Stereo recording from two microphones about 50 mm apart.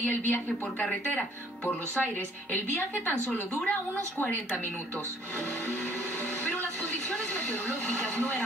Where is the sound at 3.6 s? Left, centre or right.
Left.